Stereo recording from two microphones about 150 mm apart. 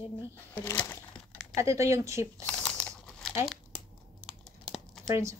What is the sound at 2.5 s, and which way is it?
Crumpling, 5° left (ahead or behind).